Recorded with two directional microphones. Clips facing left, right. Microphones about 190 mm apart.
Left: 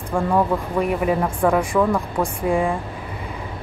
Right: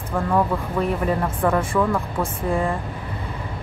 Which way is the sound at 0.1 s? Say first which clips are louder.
Left 2 dB; 10° left (ahead or behind).